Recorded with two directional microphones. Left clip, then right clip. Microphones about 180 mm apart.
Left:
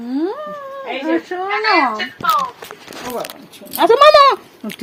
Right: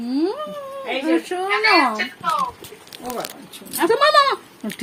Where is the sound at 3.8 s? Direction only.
30° left (ahead or behind).